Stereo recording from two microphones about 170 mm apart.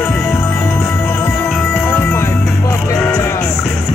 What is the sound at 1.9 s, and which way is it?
Music, 15° left (ahead or behind).